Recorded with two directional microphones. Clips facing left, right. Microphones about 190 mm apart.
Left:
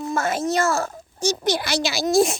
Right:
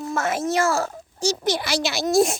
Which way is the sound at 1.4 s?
Centre (ahead or behind).